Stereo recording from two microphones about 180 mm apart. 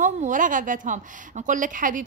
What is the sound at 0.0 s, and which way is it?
Speech, 45° right (ahead or behind).